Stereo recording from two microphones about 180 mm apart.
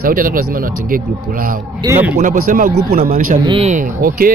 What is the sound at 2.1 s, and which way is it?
Speech, 50° right (ahead or behind).